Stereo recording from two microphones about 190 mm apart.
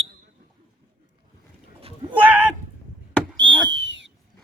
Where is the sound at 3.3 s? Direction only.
70° right (ahead or behind).